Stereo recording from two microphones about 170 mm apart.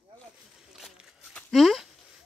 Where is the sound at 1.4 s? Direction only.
Centre (ahead or behind).